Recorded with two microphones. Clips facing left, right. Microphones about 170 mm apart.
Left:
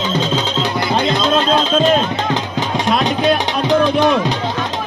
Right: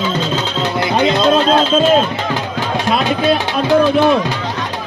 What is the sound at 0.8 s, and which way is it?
Music, 10° right (ahead or behind).